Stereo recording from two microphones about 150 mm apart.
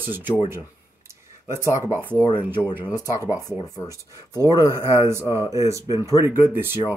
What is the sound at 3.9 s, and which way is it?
Speech, 20° right (ahead or behind).